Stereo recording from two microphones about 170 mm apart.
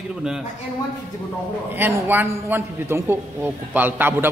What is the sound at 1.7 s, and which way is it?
A man's voice, 10° right (ahead or behind).